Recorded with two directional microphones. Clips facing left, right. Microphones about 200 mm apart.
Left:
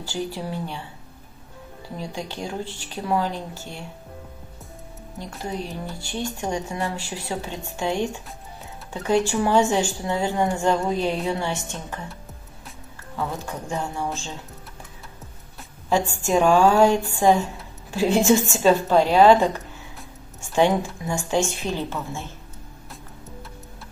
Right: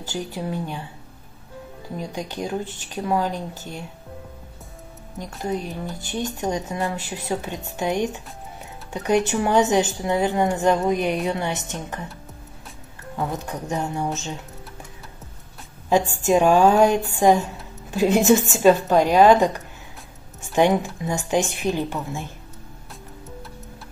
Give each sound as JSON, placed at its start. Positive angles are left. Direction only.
{"t": 0.1, "sound": "a woman's voice", "side_deg": -20}
{"t": 2.0, "sound": "speech", "side_deg": -20}
{"t": 3.3, "sound": "speech", "side_deg": -45}
{"t": 5.4, "sound": "a woman's voice", "side_deg": -20}
{"t": 13.1, "sound": "speech", "side_deg": -20}
{"t": 15.9, "sound": "a woman's voice", "side_deg": -15}
{"t": 20.5, "sound": "a woman's voice", "side_deg": -20}